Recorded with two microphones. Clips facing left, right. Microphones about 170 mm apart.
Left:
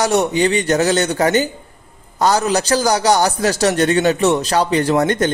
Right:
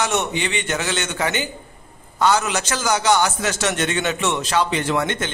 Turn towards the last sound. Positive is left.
turn(degrees=40)  # may be behind; listen again after turning